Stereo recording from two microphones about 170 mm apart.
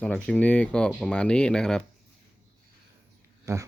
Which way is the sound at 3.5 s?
15° right (ahead or behind).